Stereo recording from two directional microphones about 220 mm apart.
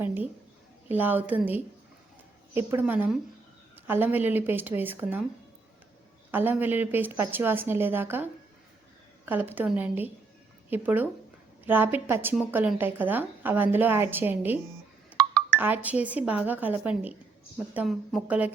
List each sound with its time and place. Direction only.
0.0 s a woman's voice: 10° right (ahead or behind)
6.3 s a woman's voice: 10° right (ahead or behind)